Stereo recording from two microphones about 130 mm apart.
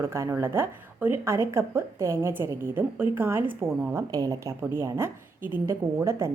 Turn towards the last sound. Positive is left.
turn(degrees=-20)  # may be behind; listen again after turning